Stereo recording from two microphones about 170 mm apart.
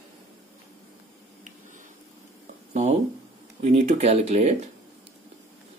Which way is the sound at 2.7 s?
40° right (ahead or behind).